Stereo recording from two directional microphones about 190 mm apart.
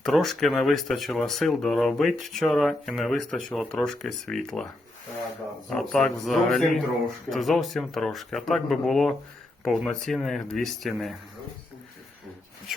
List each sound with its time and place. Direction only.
0.0 s speech: centre (ahead or behind)
5.6 s speech: centre (ahead or behind)